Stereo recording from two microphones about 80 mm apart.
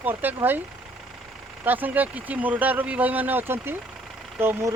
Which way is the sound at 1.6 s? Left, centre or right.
Right.